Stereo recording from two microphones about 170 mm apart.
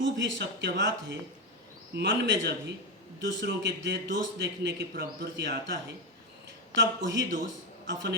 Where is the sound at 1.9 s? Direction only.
85° right.